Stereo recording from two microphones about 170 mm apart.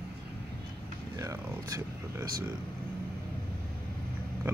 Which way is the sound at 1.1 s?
20° right (ahead or behind).